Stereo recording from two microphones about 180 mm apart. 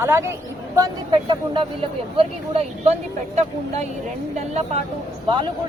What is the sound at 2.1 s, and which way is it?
Speech, 35° right (ahead or behind).